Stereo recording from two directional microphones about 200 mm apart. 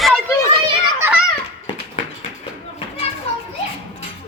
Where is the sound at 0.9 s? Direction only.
10° right (ahead or behind).